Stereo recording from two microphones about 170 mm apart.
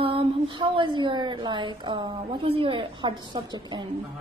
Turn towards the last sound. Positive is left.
turn(degrees=-30)  # may be behind; listen again after turning